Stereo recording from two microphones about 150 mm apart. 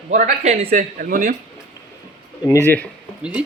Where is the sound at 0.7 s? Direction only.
65° right (ahead or behind).